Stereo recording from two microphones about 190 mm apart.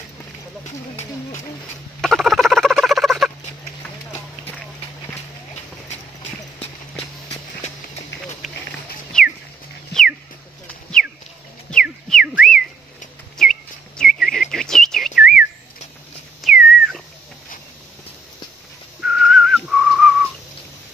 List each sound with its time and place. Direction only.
2.0 s rodents: centre (ahead or behind)
9.1 s music: 5° left (ahead or behind)
11.7 s whistling: centre (ahead or behind)
14.5 s chirp: centre (ahead or behind)
16.4 s a sound: centre (ahead or behind)
18.9 s whistling: 5° right (ahead or behind)